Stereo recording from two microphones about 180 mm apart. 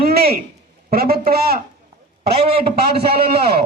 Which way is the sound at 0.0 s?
60° right (ahead or behind).